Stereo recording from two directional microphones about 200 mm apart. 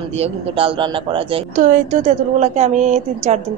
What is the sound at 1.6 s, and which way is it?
A woman's voice, 35° right (ahead or behind).